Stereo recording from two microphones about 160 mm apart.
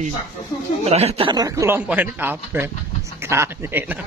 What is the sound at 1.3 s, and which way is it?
Speech, 20° right (ahead or behind).